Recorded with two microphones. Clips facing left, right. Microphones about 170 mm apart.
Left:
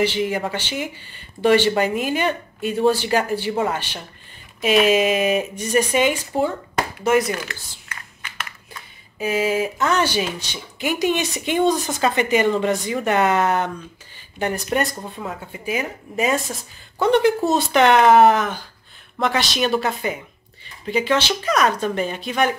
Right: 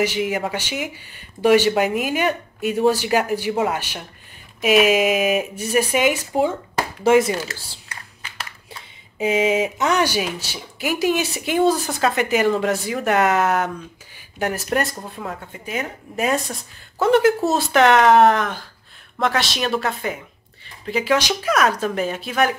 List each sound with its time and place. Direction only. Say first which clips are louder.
0.0 s speech: even; 10° right (ahead or behind)
7.0 s a sound: right 4 dB; 25° right (ahead or behind)
9.2 s speech: right 2 dB; 20° right (ahead or behind); by 22.6 s centre (ahead or behind)